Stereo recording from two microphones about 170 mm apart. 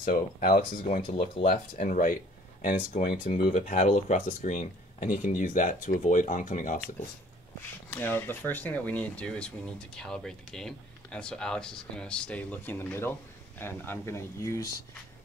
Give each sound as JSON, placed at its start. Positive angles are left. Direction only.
{"t": 0.0, "sound": "speech", "side_deg": 50}
{"t": 1.5, "sound": "speech", "side_deg": 50}
{"t": 7.9, "sound": "speech", "side_deg": 10}